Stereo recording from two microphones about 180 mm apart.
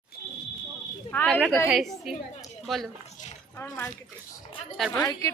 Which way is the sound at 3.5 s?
10° left (ahead or behind).